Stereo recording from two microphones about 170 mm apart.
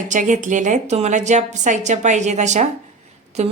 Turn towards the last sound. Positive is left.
turn(degrees=-40)  # may be behind; listen again after turning